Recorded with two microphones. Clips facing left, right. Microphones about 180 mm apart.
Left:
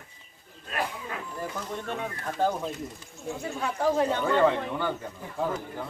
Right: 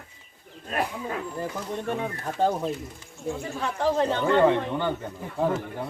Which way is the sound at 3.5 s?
5° left (ahead or behind).